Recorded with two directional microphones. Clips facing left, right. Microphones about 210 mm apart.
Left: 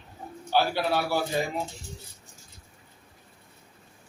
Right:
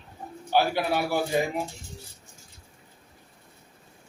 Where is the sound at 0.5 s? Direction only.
15° right (ahead or behind).